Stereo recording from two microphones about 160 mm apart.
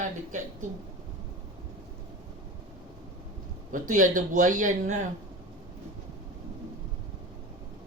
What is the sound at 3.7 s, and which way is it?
Speech, 55° right (ahead or behind).